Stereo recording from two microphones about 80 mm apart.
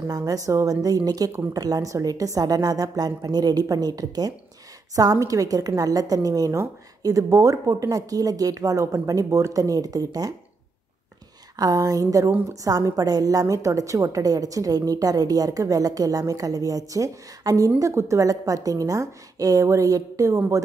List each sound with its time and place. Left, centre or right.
0.1 s a woman's voice: right
11.5 s a woman's voice: right